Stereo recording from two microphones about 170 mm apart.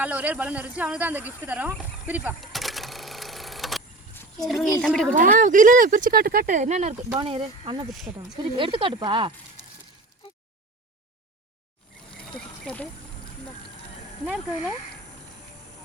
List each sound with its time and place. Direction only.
0.0 s speech: 10° right (ahead or behind)
2.4 s vehicle: centre (ahead or behind)
4.4 s a woman's voice: centre (ahead or behind)
5.1 s speech: 50° right (ahead or behind)
7.1 s speech: 30° right (ahead or behind)
12.3 s a sound: 5° left (ahead or behind)
14.3 s a woman's voice: 5° right (ahead or behind)